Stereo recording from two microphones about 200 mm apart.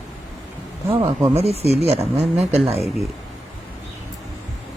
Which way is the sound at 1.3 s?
30° right (ahead or behind).